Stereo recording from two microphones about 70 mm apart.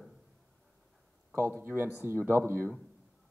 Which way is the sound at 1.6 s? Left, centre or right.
Right.